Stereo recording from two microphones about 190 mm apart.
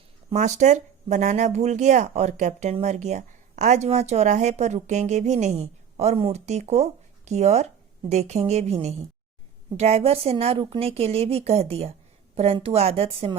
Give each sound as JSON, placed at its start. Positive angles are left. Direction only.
{"t": 0.3, "sound": "speech", "side_deg": -40}